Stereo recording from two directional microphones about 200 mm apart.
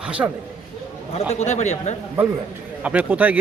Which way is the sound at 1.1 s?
35° left (ahead or behind).